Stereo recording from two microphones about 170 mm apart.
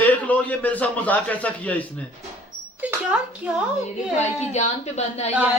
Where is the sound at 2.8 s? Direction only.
5° right (ahead or behind).